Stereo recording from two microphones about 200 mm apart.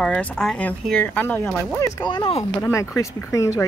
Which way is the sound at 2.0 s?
25° left (ahead or behind).